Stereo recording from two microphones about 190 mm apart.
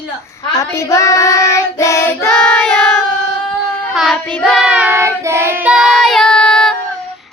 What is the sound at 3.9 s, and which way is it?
Child singing, centre (ahead or behind).